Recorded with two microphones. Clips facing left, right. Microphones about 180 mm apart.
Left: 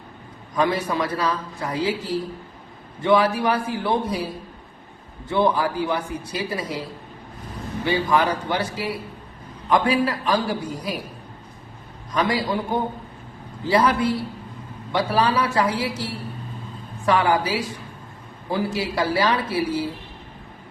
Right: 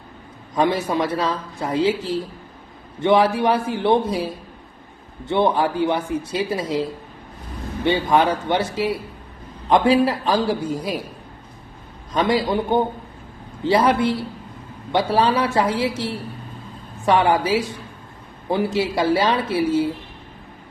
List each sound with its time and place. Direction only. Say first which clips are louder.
0.5 s a woman's voice: right 2 dB; 25° right (ahead or behind)
7.9 s a woman's voice: right 3 dB; 25° right (ahead or behind)
12.1 s a woman's voice: right 3 dB; 25° right (ahead or behind)